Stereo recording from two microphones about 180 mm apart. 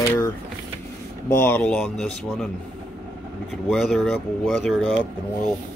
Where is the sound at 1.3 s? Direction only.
10° left (ahead or behind).